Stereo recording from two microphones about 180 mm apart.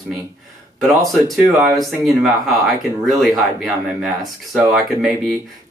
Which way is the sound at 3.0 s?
Centre (ahead or behind).